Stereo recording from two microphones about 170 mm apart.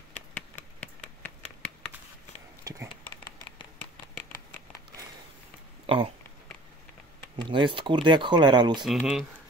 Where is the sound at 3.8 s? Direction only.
10° left (ahead or behind).